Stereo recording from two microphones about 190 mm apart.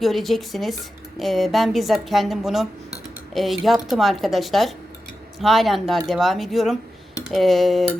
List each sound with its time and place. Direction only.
0.0 s a woman's voice: centre (ahead or behind)